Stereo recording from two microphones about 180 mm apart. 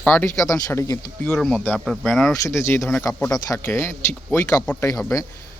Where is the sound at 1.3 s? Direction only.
5° left (ahead or behind).